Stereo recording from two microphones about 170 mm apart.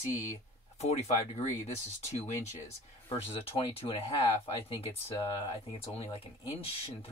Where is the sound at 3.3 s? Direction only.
35° left (ahead or behind).